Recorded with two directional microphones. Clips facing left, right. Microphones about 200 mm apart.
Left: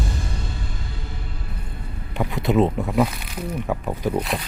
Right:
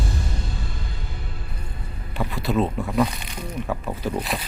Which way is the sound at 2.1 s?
20° left (ahead or behind).